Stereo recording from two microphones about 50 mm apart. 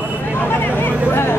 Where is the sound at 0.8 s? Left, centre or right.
Left.